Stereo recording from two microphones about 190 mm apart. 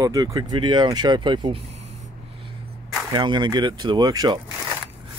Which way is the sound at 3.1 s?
25° right (ahead or behind).